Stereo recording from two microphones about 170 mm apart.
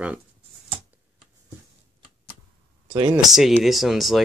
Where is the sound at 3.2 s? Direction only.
Centre (ahead or behind).